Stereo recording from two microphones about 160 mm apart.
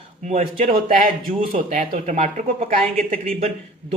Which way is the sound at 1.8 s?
45° right (ahead or behind).